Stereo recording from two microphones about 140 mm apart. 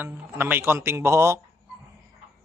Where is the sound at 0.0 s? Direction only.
15° right (ahead or behind).